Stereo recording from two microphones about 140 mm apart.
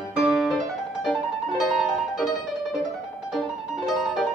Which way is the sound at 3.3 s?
Centre (ahead or behind).